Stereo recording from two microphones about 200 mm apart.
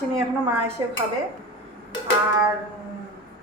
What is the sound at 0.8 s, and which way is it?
Speech, 15° right (ahead or behind).